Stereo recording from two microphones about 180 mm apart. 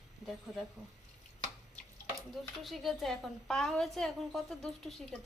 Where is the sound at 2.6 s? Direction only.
Centre (ahead or behind).